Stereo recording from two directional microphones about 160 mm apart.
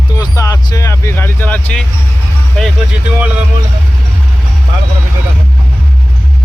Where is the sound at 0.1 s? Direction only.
25° left (ahead or behind); by 2.7 s 5° left (ahead or behind).